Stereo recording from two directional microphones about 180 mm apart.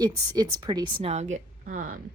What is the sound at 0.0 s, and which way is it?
A woman's voice, 25° right (ahead or behind).